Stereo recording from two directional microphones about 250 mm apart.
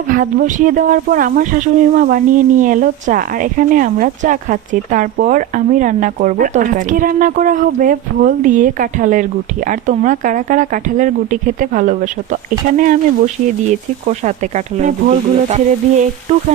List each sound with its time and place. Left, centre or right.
0.1 s speech: right